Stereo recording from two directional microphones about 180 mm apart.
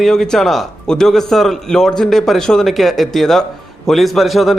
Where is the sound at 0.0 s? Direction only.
5° left (ahead or behind).